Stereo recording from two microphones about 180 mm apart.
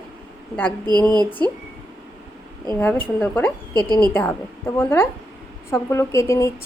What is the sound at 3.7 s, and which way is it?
Speech, 20° right (ahead or behind).